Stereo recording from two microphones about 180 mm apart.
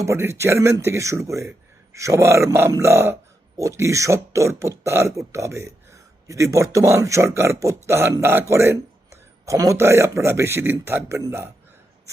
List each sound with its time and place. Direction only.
0.0 s speech: 15° right (ahead or behind)